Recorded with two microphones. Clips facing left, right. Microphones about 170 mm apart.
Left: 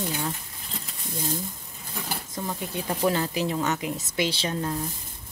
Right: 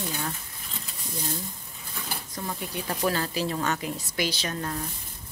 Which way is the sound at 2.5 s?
20° left (ahead or behind).